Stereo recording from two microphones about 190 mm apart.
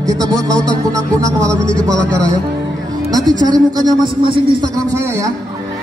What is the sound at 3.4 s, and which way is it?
Speech, 20° right (ahead or behind).